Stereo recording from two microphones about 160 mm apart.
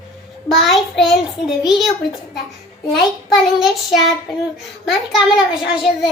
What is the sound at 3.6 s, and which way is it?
Child singing, centre (ahead or behind).